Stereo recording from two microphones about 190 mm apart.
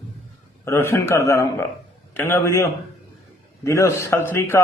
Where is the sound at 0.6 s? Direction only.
15° left (ahead or behind).